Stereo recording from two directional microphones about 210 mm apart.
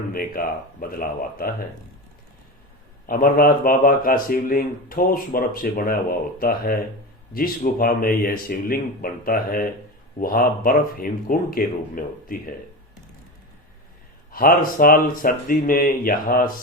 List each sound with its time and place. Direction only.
0.1 s speech: 45° left (ahead or behind)
3.1 s speech: 45° left (ahead or behind)
14.3 s speech: 45° left (ahead or behind)